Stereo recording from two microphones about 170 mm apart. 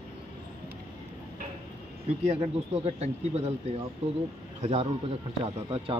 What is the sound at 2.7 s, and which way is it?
A man's voice, 40° right (ahead or behind).